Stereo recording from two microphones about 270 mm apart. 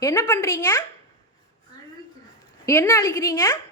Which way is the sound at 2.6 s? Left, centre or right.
Centre.